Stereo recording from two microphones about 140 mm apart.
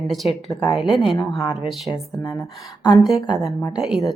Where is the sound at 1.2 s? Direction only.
30° left (ahead or behind).